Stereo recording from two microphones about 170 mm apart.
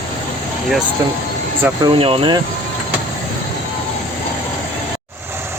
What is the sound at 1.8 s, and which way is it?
Speech, 35° right (ahead or behind).